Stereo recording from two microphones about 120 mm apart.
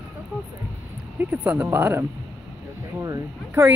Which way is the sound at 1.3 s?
10° right (ahead or behind).